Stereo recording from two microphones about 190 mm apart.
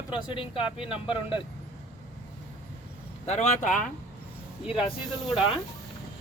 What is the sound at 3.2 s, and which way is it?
Speech, 35° left (ahead or behind).